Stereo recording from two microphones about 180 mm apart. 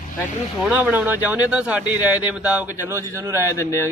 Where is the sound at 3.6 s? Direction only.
15° left (ahead or behind).